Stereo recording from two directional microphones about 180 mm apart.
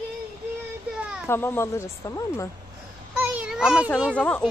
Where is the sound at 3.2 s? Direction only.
5° right (ahead or behind).